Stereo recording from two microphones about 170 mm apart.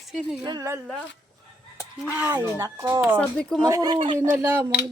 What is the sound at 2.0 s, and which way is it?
A woman's voice, 10° right (ahead or behind).